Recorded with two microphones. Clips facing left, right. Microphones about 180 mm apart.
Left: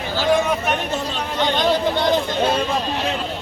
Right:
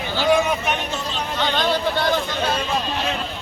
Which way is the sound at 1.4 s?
20° left (ahead or behind).